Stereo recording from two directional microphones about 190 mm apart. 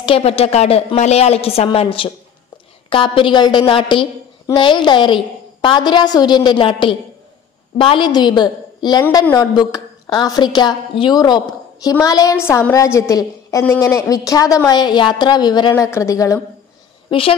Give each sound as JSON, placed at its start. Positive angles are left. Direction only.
{"t": 0.0, "sound": "a woman's voice", "side_deg": 30}
{"t": 9.0, "sound": "a woman's voice", "side_deg": 10}
{"t": 17.1, "sound": "a woman's voice", "side_deg": 30}